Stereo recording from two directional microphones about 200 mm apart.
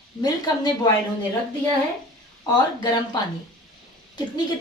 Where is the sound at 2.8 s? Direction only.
20° left (ahead or behind).